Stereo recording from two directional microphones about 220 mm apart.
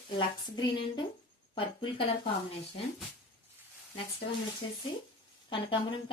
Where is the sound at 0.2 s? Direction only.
20° left (ahead or behind).